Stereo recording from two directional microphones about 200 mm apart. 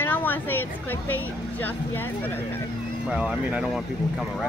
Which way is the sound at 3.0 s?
5° right (ahead or behind).